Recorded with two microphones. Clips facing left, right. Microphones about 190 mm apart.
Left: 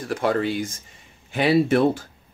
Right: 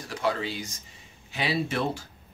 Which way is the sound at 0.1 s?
55° left (ahead or behind).